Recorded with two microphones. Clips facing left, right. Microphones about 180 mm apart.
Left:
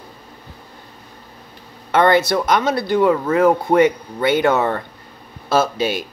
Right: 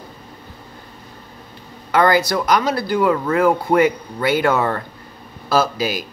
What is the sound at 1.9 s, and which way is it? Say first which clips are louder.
Speech: left 1 dB; 25° left (ahead or behind).